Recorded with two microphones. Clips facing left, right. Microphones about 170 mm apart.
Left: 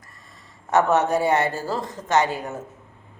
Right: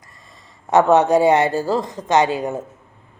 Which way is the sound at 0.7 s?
15° right (ahead or behind).